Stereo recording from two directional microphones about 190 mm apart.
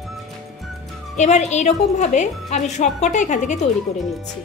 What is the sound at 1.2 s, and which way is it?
Speech, 35° left (ahead or behind).